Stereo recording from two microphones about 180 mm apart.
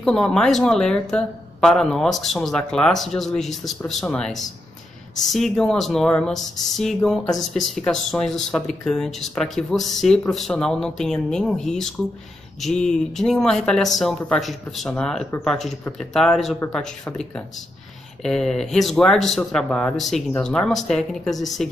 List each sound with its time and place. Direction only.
0.0 s speech: 5° left (ahead or behind)